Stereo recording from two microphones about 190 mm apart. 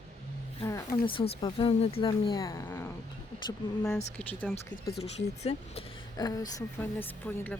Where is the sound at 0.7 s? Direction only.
25° left (ahead or behind).